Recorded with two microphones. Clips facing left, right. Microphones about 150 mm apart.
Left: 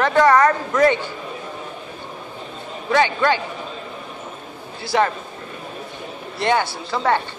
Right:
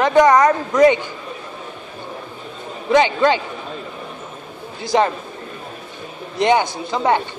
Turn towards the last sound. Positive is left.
turn(degrees=-15)  # may be behind; listen again after turning